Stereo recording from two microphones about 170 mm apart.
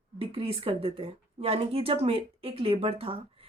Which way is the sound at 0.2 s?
35° right (ahead or behind).